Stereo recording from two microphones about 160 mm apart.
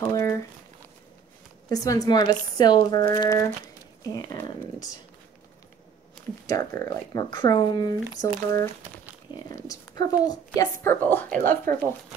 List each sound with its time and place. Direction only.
0.0 s speech: 20° left (ahead or behind)
1.7 s speech: 20° left (ahead or behind)
6.4 s speech: 20° left (ahead or behind)
11.7 s speech: 65° right (ahead or behind)